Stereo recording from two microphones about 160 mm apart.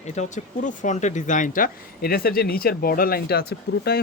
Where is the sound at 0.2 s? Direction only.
50° left (ahead or behind).